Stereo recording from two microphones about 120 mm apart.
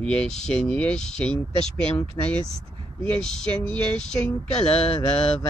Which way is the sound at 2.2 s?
30° left (ahead or behind).